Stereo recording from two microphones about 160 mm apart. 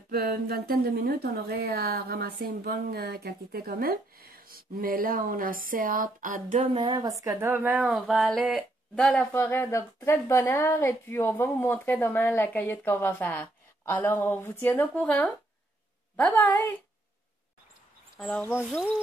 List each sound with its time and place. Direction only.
0.1 s speech: 70° right (ahead or behind); by 6.8 s 50° right (ahead or behind)
6.8 s speech: 25° right (ahead or behind); by 16.6 s 5° left (ahead or behind)
18.2 s speech: 10° left (ahead or behind)